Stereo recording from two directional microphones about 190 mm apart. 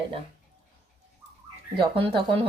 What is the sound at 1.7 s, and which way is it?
Speech, 25° right (ahead or behind).